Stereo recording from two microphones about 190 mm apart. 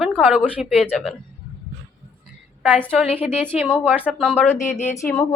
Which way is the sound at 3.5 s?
35° left (ahead or behind).